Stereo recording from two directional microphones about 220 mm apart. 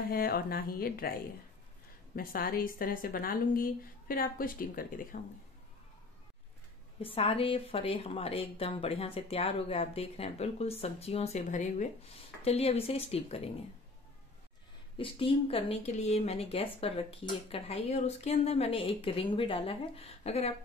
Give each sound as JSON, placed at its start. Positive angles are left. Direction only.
{"t": 0.1, "sound": "a woman's voice", "side_deg": 45}
{"t": 7.0, "sound": "a woman's voice", "side_deg": 25}
{"t": 15.0, "sound": "a woman's voice", "side_deg": 25}